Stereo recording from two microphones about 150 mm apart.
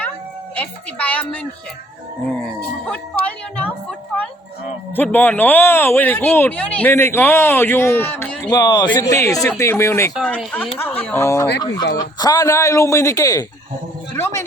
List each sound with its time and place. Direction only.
0.5 s speech: 10° left (ahead or behind)
4.9 s speech: 10° left (ahead or behind)
8.4 s a man's voice: 30° left (ahead or behind)